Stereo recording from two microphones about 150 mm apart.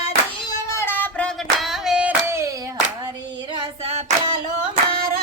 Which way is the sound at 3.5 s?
30° right (ahead or behind).